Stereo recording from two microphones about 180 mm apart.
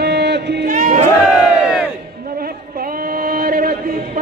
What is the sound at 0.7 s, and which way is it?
Crowd, 50° right (ahead or behind).